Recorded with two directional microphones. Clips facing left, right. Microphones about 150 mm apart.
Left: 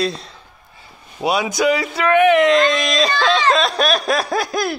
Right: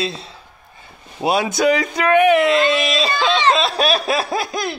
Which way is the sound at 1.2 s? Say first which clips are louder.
Right 1 dB; 25° right (ahead or behind).